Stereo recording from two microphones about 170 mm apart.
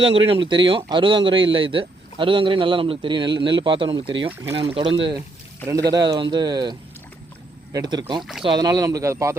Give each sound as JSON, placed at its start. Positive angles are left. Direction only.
{"t": 0.0, "sound": "a man's voice", "side_deg": -35}
{"t": 5.6, "sound": "a man's voice", "side_deg": -20}
{"t": 8.2, "sound": "speech", "side_deg": 0}
{"t": 8.4, "sound": "a man's voice", "side_deg": -25}